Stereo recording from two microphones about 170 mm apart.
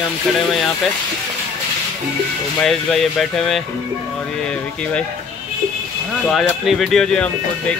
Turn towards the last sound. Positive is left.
turn(degrees=5)  # may be behind; listen again after turning